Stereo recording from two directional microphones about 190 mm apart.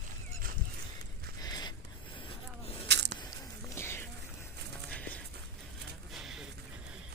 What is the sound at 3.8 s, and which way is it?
Music, 15° left (ahead or behind).